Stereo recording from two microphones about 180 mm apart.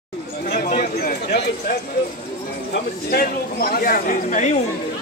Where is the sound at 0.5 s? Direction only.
60° left (ahead or behind).